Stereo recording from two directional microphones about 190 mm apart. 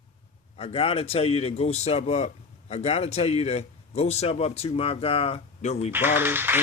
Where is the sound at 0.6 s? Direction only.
30° left (ahead or behind).